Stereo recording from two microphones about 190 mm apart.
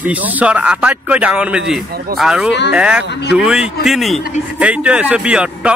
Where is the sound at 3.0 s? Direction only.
65° left (ahead or behind).